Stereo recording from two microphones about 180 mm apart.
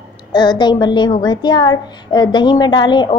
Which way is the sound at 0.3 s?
25° left (ahead or behind).